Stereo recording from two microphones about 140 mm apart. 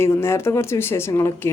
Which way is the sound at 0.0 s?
20° left (ahead or behind).